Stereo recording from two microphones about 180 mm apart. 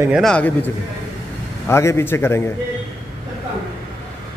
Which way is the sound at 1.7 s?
15° left (ahead or behind).